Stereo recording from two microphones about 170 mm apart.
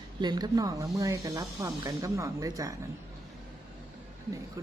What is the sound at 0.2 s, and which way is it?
Speech, 25° right (ahead or behind).